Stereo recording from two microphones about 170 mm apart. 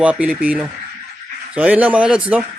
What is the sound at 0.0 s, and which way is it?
Speech, 5° right (ahead or behind).